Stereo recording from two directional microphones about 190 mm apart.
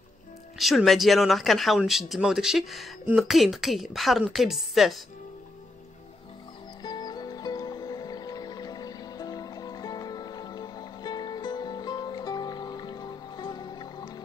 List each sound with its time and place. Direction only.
0.6 s speech: centre (ahead or behind)
6.8 s music: 20° left (ahead or behind)